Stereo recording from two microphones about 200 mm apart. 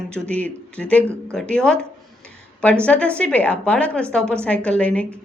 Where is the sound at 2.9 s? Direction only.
5° left (ahead or behind).